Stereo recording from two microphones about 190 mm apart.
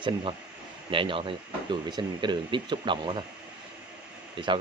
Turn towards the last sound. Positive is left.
turn(degrees=-25)  # may be behind; listen again after turning